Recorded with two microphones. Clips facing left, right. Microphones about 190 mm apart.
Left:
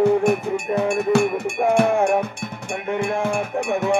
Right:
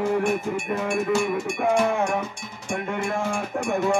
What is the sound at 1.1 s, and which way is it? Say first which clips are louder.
Cowbell: left 5 dB; 60° left (ahead or behind).